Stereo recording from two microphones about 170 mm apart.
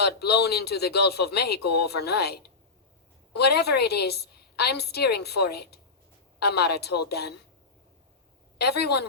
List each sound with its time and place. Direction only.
0.0 s a woman's voice: 75° left (ahead or behind)
8.5 s a woman's voice: 75° left (ahead or behind)